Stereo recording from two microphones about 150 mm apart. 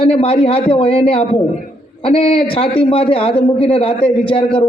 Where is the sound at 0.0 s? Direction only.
40° left (ahead or behind).